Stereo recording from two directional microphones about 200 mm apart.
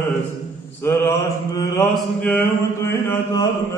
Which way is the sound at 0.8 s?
15° left (ahead or behind).